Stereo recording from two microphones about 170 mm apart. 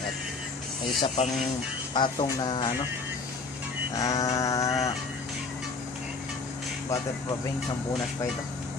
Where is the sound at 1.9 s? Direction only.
30° left (ahead or behind).